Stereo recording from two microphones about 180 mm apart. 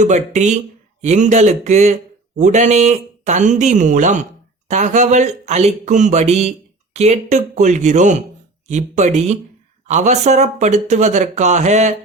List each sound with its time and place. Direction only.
0.0 s speech: 40° right (ahead or behind)